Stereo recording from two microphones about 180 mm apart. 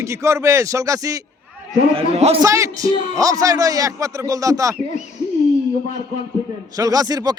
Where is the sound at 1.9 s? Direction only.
30° right (ahead or behind).